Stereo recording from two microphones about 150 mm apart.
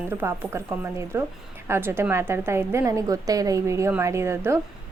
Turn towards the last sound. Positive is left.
turn(degrees=-20)  # may be behind; listen again after turning